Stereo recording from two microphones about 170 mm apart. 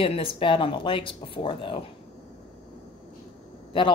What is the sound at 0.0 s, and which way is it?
Speech, 35° left (ahead or behind).